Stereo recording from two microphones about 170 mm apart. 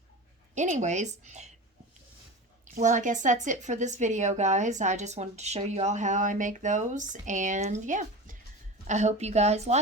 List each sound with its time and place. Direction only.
0.5 s a woman's voice: 45° right (ahead or behind)
2.6 s a woman's voice: 50° right (ahead or behind)